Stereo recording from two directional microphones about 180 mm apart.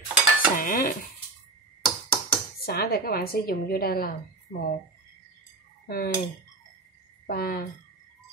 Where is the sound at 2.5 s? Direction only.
55° left (ahead or behind).